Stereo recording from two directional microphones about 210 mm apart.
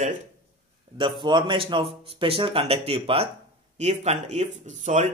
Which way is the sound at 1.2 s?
25° right (ahead or behind).